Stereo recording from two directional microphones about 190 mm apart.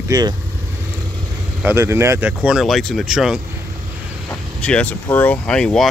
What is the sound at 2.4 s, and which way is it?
Speech, centre (ahead or behind).